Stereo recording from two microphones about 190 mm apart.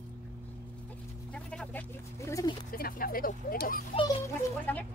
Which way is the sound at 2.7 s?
50° left (ahead or behind).